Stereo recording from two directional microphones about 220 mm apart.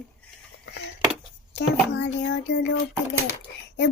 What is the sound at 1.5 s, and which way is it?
A child's voice, 55° left (ahead or behind).